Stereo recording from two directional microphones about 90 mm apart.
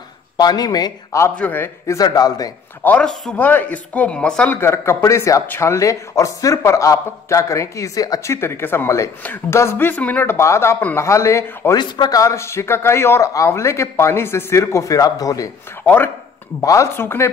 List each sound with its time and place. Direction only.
0.4 s speech: 45° left (ahead or behind)
1.4 s speech: 25° left (ahead or behind)
2.0 s speech: 45° left (ahead or behind)
3.0 s speech: 10° left (ahead or behind)
3.3 s speech: 20° left (ahead or behind)
4.5 s speech: 25° left (ahead or behind)
8.3 s speech: 30° left (ahead or behind)
9.2 s speech: 20° left (ahead or behind)
10.3 s speech: 30° left (ahead or behind)
11.7 s speech: 50° left (ahead or behind)
15.8 s speech: 20° left (ahead or behind)
16.6 s speech: 35° left (ahead or behind)
17.0 s speech: 25° left (ahead or behind)